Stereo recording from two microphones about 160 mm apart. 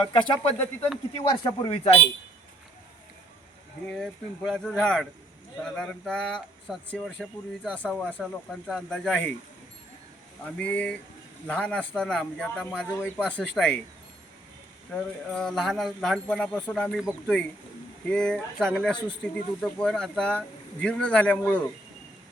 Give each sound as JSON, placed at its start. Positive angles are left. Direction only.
{"t": 0.1, "sound": "speech", "side_deg": 35}
{"t": 1.7, "sound": "speech", "side_deg": 40}
{"t": 3.8, "sound": "speech", "side_deg": 5}
{"t": 10.6, "sound": "a man's voice", "side_deg": 10}
{"t": 14.9, "sound": "speech", "side_deg": 5}
{"t": 18.1, "sound": "a man's voice", "side_deg": 5}